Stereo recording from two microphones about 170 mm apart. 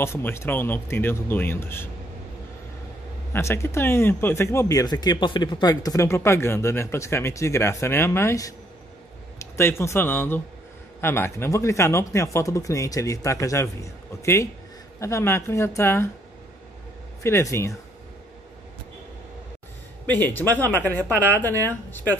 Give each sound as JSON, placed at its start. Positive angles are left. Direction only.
{"t": 0.0, "sound": "speech", "side_deg": 15}
{"t": 3.3, "sound": "speech", "side_deg": 15}
{"t": 17.2, "sound": "speech", "side_deg": 15}
{"t": 20.1, "sound": "speech", "side_deg": 10}